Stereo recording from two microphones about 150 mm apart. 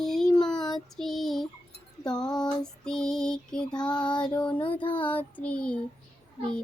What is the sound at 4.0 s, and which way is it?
Speech, 30° left (ahead or behind).